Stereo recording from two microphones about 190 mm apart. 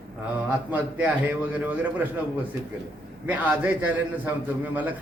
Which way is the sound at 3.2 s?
10° right (ahead or behind).